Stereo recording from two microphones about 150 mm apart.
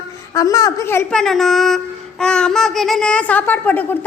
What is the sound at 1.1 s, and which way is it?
Child singing, 5° left (ahead or behind).